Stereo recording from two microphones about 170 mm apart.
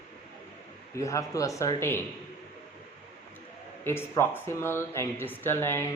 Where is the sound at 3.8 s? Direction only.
15° left (ahead or behind).